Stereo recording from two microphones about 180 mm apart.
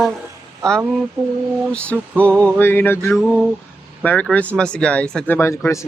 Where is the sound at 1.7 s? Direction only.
5° left (ahead or behind).